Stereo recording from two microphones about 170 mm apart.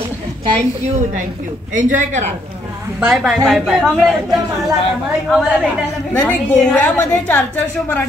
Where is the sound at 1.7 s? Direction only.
50° right (ahead or behind).